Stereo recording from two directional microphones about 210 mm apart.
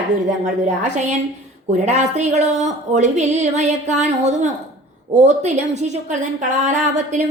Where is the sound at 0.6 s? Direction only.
35° right (ahead or behind).